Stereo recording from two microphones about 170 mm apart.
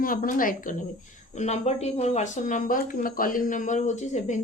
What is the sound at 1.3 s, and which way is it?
A woman's voice, 40° left (ahead or behind).